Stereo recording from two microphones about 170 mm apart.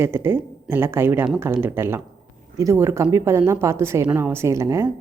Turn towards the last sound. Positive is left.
turn(degrees=-15)  # may be behind; listen again after turning